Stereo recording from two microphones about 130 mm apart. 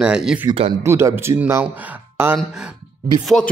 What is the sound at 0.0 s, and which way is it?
Speech, 5° right (ahead or behind).